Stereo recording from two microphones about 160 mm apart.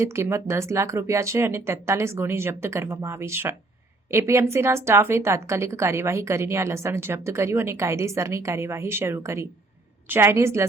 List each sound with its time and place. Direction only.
0.0 s a woman's voice: 15° right (ahead or behind)